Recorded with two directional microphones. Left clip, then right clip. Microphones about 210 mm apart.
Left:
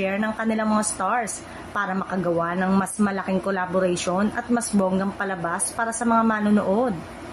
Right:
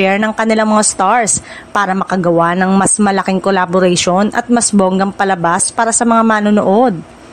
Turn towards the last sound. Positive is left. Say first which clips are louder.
# right 11 dB
turn(degrees=-45)  # may be behind; listen again after turning